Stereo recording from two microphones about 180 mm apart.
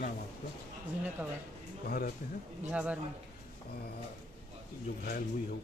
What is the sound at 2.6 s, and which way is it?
Speech, 5° right (ahead or behind).